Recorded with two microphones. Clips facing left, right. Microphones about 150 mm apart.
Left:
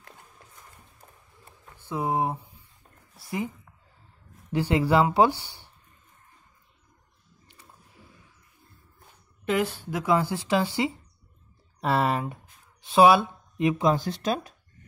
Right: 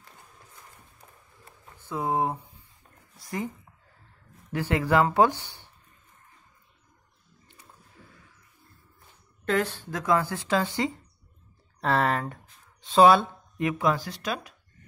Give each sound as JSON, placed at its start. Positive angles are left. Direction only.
{"t": 1.9, "sound": "speech", "side_deg": 15}
{"t": 4.5, "sound": "speech", "side_deg": 15}
{"t": 9.5, "sound": "speech", "side_deg": 10}